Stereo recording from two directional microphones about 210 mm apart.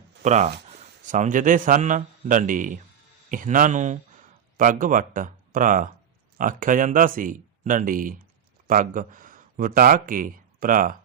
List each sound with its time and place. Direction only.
0.2 s a man's voice: 35° right (ahead or behind)